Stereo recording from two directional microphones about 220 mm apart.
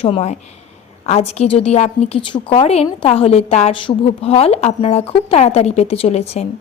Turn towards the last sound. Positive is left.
turn(degrees=30)  # may be behind; listen again after turning